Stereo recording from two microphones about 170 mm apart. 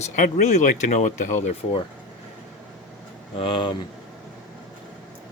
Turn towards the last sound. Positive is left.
turn(degrees=30)  # may be behind; listen again after turning